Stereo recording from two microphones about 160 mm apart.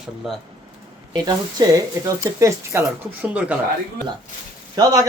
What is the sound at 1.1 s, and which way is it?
Speech, 25° right (ahead or behind).